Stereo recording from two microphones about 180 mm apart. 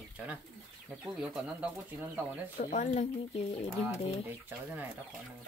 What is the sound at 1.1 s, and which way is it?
Speech, 5° right (ahead or behind).